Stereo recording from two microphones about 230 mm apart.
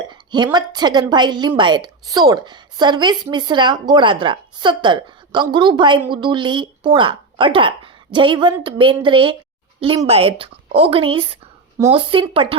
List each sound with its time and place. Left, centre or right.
0.1 s a woman's voice: centre